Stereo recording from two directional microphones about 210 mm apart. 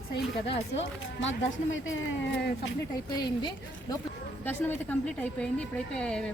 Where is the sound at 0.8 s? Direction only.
65° left (ahead or behind).